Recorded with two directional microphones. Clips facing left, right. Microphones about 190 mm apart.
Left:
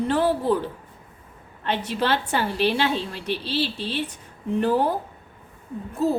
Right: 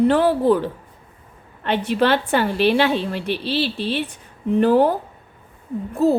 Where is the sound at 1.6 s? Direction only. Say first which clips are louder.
Right 6 dB; 60° right (ahead or behind).